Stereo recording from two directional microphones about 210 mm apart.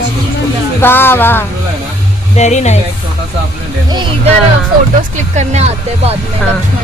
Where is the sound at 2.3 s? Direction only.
35° left (ahead or behind).